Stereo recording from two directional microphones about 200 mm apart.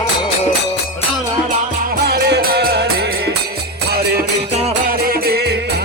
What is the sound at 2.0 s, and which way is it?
Music, 55° right (ahead or behind).